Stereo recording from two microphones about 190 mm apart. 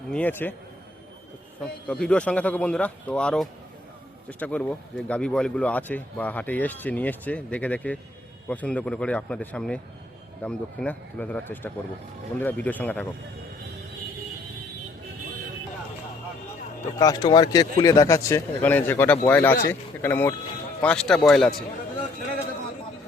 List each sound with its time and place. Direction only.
0.1 s speech: 10° left (ahead or behind)
1.6 s speech: 5° left (ahead or behind)
17.0 s speech: 20° left (ahead or behind); by 21.5 s 5° left (ahead or behind)